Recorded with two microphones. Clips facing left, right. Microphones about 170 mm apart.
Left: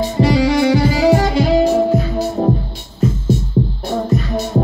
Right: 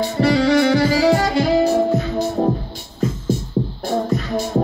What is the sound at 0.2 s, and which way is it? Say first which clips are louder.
Music: left 1 dB; 10° left (ahead or behind).